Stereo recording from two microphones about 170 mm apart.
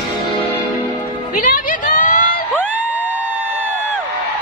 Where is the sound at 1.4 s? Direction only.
55° left (ahead or behind).